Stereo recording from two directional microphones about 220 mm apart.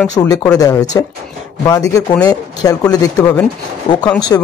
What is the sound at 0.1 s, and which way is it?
Speech, 15° left (ahead or behind).